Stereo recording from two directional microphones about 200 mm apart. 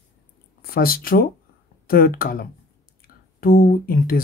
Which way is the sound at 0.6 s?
50° left (ahead or behind).